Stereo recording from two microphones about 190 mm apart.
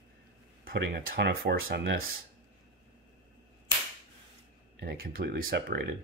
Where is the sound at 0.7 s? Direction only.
50° right (ahead or behind).